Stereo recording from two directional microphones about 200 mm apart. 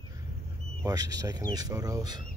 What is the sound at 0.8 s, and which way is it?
Speech, 20° right (ahead or behind).